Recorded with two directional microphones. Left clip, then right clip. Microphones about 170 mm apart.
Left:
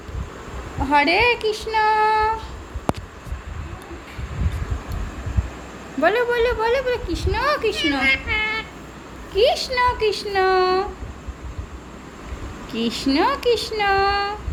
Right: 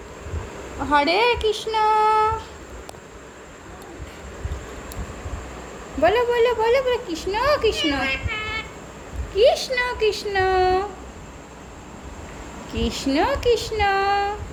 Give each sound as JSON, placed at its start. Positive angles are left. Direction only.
{"t": 0.9, "sound": "speech", "side_deg": 10}
{"t": 6.0, "sound": "speech", "side_deg": 10}
{"t": 9.3, "sound": "speech", "side_deg": 10}
{"t": 12.7, "sound": "speech", "side_deg": 10}